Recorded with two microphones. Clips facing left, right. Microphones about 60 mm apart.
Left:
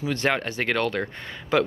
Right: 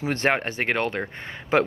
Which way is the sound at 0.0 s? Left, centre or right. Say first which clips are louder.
Right 1 dB; right.